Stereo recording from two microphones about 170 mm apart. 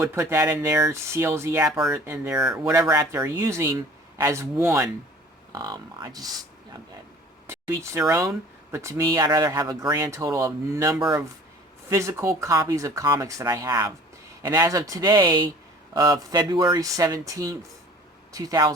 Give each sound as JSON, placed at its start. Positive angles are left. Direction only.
{"t": 0.0, "sound": "speech", "side_deg": -15}
{"t": 7.4, "sound": "speech", "side_deg": -15}